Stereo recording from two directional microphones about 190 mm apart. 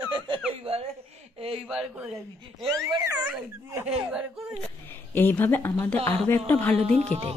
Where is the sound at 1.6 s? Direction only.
5° right (ahead or behind).